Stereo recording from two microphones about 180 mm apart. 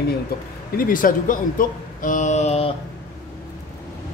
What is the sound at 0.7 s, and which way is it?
Speech, 50° left (ahead or behind).